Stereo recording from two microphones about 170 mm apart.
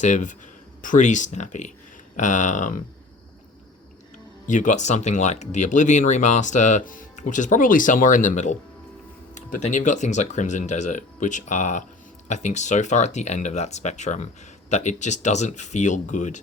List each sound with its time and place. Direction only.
0.0 s speech: 45° left (ahead or behind)
4.4 s speech: 45° left (ahead or behind)